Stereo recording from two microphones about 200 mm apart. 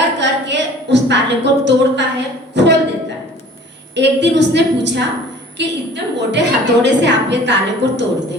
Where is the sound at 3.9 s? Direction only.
60° right (ahead or behind).